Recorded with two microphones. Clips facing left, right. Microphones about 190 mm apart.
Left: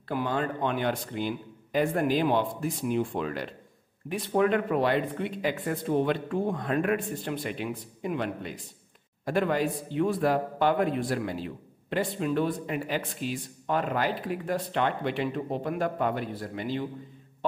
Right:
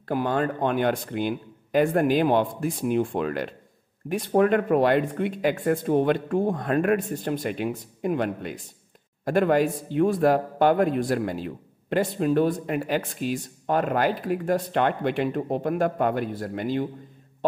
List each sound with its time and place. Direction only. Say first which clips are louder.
0.1 s a man's voice: right 4 dB; 50° right (ahead or behind)
4.1 s a man's voice: right 4 dB; 45° right (ahead or behind)